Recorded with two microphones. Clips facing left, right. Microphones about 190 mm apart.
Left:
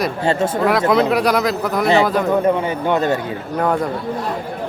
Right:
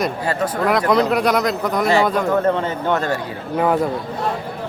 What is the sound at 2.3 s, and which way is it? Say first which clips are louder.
Speech: left 2 dB; 10° left (ahead or behind).